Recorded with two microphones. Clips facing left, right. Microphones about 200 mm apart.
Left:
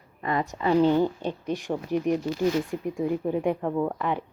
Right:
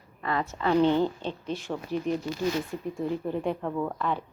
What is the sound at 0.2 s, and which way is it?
A woman's voice, 15° left (ahead or behind).